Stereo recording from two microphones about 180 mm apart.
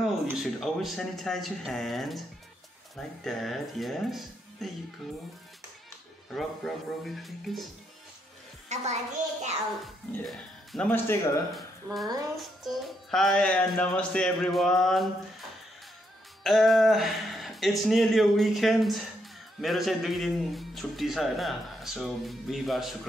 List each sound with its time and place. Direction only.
0.4 s a man's voice: centre (ahead or behind)
3.3 s a man's voice: centre (ahead or behind)
6.3 s a man's voice: centre (ahead or behind)
8.6 s a child's voice: 40° right (ahead or behind)
10.2 s a man's voice: 5° left (ahead or behind)
16.4 s a man's voice: centre (ahead or behind)